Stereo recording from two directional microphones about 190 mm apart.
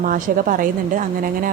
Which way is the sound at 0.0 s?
45° right (ahead or behind).